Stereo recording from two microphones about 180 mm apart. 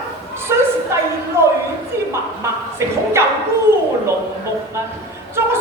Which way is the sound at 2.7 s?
15° right (ahead or behind).